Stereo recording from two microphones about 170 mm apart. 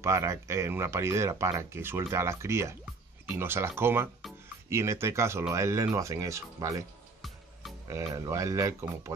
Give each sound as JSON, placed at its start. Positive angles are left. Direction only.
{"t": 0.0, "sound": "speech", "side_deg": -15}
{"t": 7.2, "sound": "music", "side_deg": 0}
{"t": 7.9, "sound": "speech", "side_deg": -20}